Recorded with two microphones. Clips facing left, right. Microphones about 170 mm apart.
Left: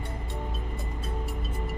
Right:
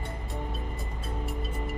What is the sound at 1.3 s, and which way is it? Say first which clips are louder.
Music: right 1 dB; centre (ahead or behind).